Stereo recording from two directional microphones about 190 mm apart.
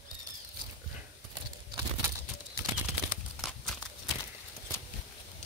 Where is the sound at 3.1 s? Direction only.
Centre (ahead or behind).